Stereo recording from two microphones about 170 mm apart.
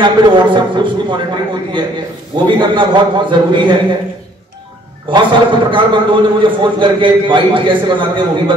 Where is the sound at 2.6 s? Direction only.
30° right (ahead or behind).